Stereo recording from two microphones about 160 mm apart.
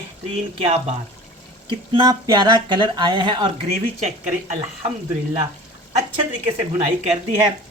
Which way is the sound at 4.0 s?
45° right (ahead or behind).